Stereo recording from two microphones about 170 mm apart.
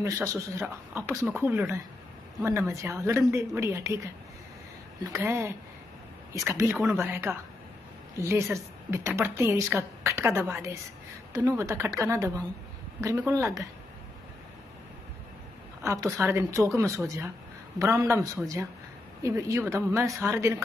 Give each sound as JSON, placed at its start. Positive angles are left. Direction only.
{"t": 0.0, "sound": "a woman's voice", "side_deg": -15}
{"t": 15.8, "sound": "a woman's voice", "side_deg": -15}